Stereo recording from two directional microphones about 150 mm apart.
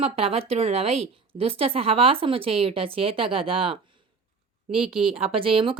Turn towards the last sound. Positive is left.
turn(degrees=-35)  # may be behind; listen again after turning